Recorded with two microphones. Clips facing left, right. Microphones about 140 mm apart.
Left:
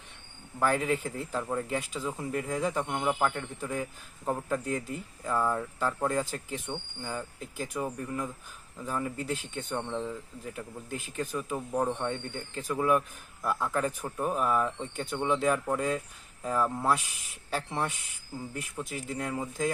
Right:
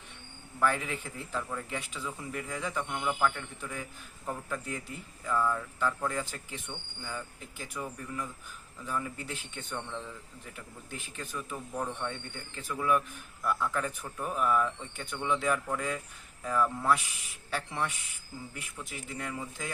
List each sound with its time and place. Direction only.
0.6 s speech: 40° left (ahead or behind)
11.5 s speech: 30° left (ahead or behind)